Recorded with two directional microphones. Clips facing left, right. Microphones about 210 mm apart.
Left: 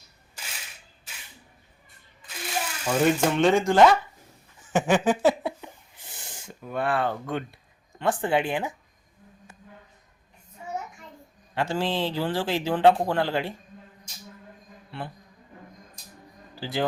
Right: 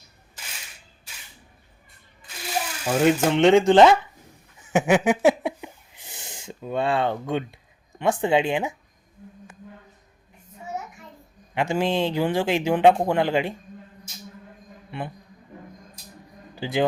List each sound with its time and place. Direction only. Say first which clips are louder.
2.8 s speech: right 2 dB; 15° right (ahead or behind)
4.7 s a sound: right 3 dB; 10° right (ahead or behind)
7.9 s speech: right 3 dB; 20° right (ahead or behind)
11.5 s speech: right 4 dB; 15° right (ahead or behind)
14.8 s a sound: right 4 dB; 15° right (ahead or behind)
16.6 s speech: right 5 dB; 15° right (ahead or behind)